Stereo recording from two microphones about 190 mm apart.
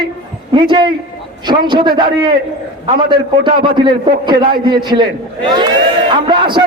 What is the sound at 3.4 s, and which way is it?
A man's voice, 25° right (ahead or behind).